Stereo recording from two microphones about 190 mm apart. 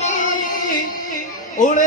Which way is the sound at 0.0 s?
40° left (ahead or behind).